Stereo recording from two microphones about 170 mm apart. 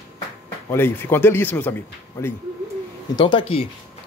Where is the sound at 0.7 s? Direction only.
10° left (ahead or behind).